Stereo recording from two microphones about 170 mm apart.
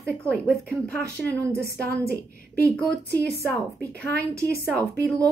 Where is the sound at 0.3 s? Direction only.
5° left (ahead or behind).